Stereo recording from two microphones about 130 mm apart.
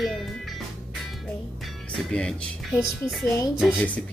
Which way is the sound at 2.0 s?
5° left (ahead or behind).